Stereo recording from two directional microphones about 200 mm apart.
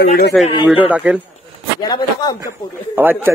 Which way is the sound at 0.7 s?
10° right (ahead or behind).